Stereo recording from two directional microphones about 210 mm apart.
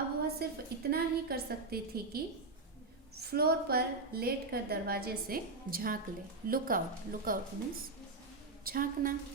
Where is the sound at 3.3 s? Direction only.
50° right (ahead or behind).